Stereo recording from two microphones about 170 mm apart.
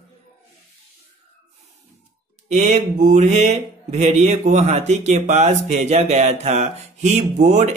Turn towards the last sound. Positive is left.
turn(degrees=-45)  # may be behind; listen again after turning